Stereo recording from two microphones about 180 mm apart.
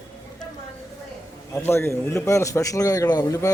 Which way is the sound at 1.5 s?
15° left (ahead or behind).